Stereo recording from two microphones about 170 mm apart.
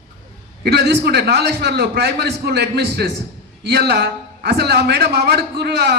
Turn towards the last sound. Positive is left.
turn(degrees=-75)  # may be behind; listen again after turning